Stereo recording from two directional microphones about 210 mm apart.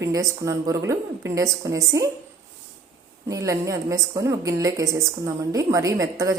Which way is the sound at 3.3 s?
15° right (ahead or behind).